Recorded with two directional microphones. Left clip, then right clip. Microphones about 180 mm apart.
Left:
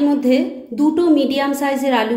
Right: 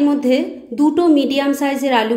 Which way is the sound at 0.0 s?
15° right (ahead or behind).